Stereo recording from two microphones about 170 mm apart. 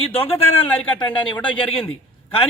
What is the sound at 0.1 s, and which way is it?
Speech, 35° left (ahead or behind).